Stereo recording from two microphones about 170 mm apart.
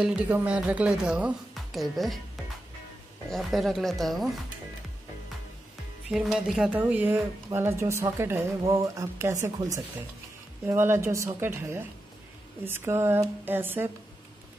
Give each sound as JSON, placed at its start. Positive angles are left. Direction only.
{"t": 0.0, "sound": "speech", "side_deg": -5}
{"t": 3.3, "sound": "speech", "side_deg": 0}
{"t": 6.0, "sound": "speech", "side_deg": -5}
{"t": 10.7, "sound": "speech", "side_deg": -15}